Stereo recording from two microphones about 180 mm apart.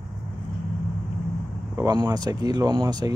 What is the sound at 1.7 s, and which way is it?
Speech, 20° right (ahead or behind).